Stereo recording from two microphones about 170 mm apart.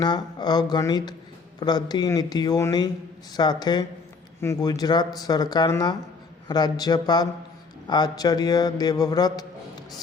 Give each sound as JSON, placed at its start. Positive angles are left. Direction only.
{"t": 0.0, "sound": "a man's voice", "side_deg": 25}